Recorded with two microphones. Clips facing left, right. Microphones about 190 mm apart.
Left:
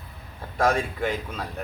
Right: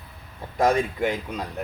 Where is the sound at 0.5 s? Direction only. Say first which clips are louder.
Right 2 dB; 20° right (ahead or behind).